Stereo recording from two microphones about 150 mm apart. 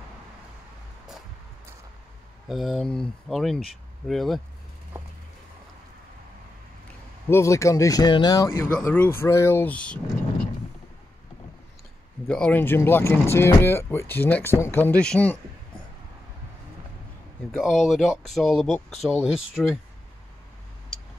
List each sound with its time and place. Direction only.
2.4 s speech: centre (ahead or behind)
7.2 s speech: 20° left (ahead or behind)
12.3 s speech: 10° left (ahead or behind)
17.5 s speech: centre (ahead or behind)